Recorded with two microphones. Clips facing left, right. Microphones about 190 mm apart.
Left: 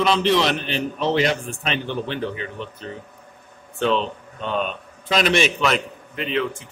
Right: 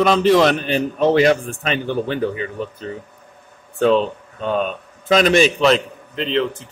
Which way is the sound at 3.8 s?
40° right (ahead or behind).